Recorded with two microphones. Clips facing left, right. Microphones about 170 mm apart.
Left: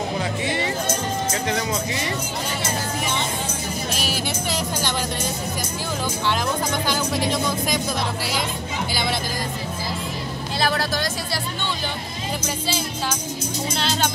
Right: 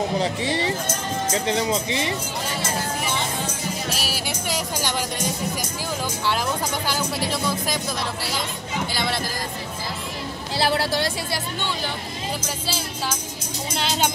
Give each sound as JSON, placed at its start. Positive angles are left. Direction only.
{"t": 0.2, "sound": "speech", "side_deg": -30}
{"t": 3.9, "sound": "music", "side_deg": -5}
{"t": 6.9, "sound": "speech", "side_deg": -5}
{"t": 8.9, "sound": "speech", "side_deg": 0}
{"t": 10.6, "sound": "speech", "side_deg": -30}
{"t": 13.7, "sound": "music", "side_deg": -10}